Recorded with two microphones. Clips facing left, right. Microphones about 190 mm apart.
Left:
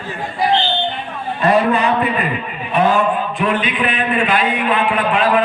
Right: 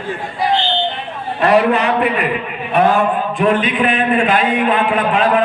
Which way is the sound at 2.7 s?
55° right (ahead or behind).